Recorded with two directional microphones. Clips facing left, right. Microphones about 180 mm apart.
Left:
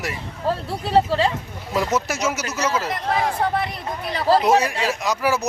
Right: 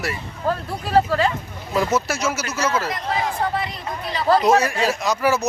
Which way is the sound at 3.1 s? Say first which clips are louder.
Left 2 dB; 55° left (ahead or behind).